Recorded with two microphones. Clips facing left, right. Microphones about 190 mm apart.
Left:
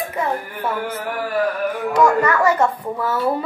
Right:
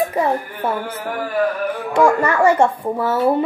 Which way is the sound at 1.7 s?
30° right (ahead or behind).